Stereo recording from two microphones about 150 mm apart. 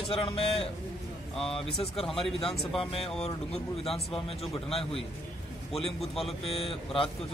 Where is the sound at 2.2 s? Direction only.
Centre (ahead or behind).